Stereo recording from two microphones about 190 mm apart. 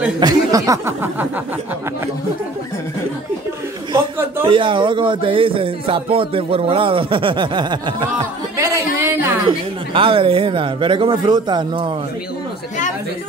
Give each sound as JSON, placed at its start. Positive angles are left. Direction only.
{"t": 0.2, "sound": "speech", "side_deg": -20}
{"t": 4.5, "sound": "speech", "side_deg": -25}
{"t": 8.5, "sound": "a sound", "side_deg": -15}
{"t": 9.5, "sound": "speech", "side_deg": -25}